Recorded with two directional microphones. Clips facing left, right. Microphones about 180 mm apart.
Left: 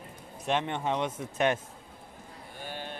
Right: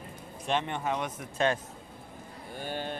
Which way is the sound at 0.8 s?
25° left (ahead or behind).